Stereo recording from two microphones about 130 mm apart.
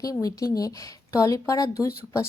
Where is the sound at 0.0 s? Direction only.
25° left (ahead or behind).